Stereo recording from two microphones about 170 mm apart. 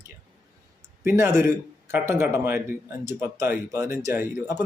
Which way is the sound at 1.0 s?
15° right (ahead or behind).